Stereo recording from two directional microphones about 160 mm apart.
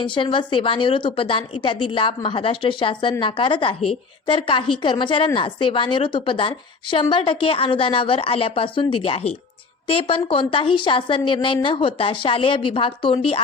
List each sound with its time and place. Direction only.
0.0 s a woman's voice: 30° left (ahead or behind)